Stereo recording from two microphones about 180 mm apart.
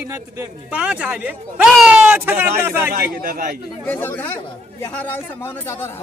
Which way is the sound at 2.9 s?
50° right (ahead or behind).